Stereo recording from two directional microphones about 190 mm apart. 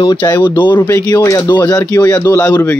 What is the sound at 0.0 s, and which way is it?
Speech, 20° left (ahead or behind).